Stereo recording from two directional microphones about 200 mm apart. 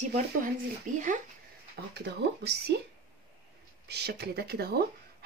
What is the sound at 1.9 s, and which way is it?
Speech, 55° right (ahead or behind).